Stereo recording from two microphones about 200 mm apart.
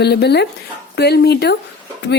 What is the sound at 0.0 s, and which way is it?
Speech, 55° left (ahead or behind).